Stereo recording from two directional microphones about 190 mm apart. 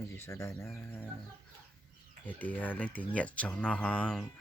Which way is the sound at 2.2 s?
10° left (ahead or behind).